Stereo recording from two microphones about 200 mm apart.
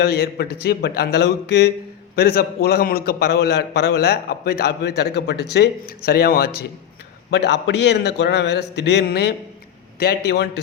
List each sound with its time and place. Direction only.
0.0 s a man's voice: 50° left (ahead or behind)